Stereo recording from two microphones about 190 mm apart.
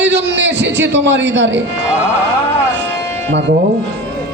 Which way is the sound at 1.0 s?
70° right (ahead or behind).